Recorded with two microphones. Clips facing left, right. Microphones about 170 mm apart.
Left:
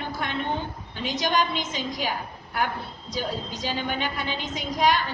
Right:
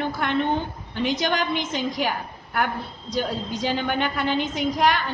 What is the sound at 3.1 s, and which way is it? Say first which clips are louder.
A woman's voice: right 4 dB; 55° right (ahead or behind).